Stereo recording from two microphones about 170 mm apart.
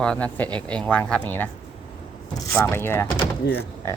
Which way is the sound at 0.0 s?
5° left (ahead or behind).